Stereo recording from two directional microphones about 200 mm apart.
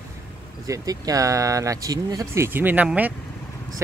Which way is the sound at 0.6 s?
15° right (ahead or behind).